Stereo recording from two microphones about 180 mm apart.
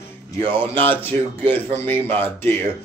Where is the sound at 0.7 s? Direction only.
10° left (ahead or behind).